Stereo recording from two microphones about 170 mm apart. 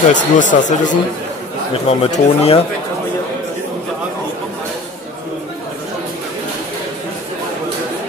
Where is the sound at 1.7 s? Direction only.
35° left (ahead or behind).